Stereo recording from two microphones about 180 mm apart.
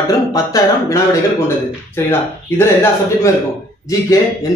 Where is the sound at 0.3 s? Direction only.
20° left (ahead or behind).